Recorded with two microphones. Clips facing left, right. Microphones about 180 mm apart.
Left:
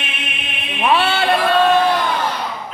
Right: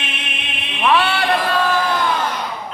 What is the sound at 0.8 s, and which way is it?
Chant, 25° left (ahead or behind).